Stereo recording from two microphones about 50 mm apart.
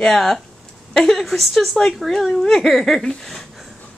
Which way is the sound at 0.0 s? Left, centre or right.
Centre.